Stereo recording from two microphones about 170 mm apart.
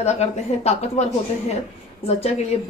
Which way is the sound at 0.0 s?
40° left (ahead or behind).